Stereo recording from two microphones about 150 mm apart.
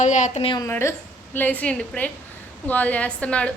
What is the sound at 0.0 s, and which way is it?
Speech, 55° left (ahead or behind).